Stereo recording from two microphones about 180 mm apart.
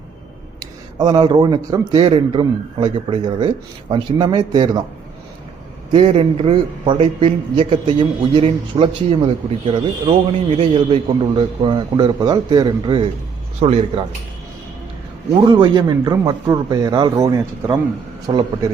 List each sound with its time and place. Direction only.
0.9 s a man's voice: 25° right (ahead or behind)
5.9 s a man's voice: 30° right (ahead or behind)
15.4 s a man's voice: 25° right (ahead or behind)